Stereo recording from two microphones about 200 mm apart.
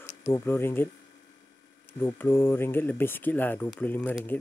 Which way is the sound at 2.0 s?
10° left (ahead or behind).